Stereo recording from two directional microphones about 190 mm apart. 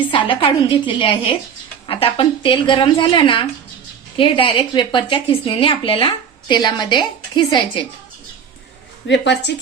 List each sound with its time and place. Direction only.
0.1 s speech: 25° left (ahead or behind)
9.0 s a woman's voice: 65° left (ahead or behind)